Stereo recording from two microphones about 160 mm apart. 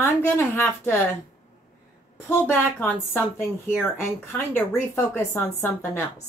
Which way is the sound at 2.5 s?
10° left (ahead or behind).